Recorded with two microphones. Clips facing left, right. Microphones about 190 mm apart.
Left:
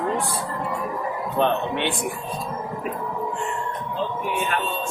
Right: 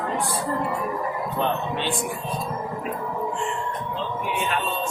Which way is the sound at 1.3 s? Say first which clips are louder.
Left 5 dB; 65° left (ahead or behind).